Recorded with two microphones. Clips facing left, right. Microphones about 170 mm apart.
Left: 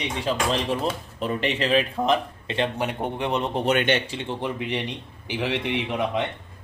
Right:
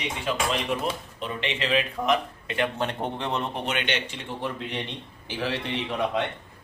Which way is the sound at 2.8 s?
10° left (ahead or behind).